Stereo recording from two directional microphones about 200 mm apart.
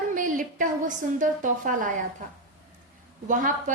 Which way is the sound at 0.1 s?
40° right (ahead or behind).